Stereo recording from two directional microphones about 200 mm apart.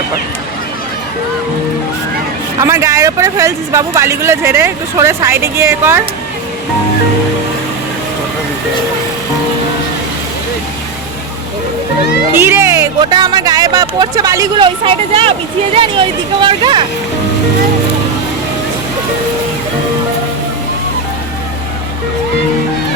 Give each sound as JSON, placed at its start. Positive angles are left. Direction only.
{"t": 2.6, "sound": "speech", "side_deg": -15}
{"t": 12.3, "sound": "speech", "side_deg": -10}